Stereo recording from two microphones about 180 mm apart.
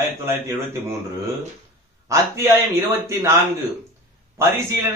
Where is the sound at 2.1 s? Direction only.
15° right (ahead or behind).